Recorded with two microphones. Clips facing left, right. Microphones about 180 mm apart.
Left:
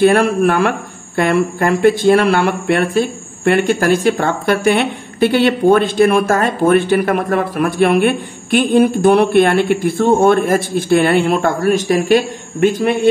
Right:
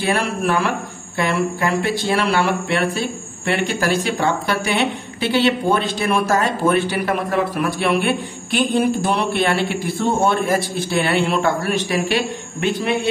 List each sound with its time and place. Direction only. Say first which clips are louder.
0.0 s a woman's voice: left 9 dB; 55° left (ahead or behind)